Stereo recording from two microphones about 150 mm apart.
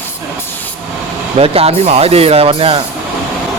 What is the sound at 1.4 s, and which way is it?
Speech, 40° right (ahead or behind).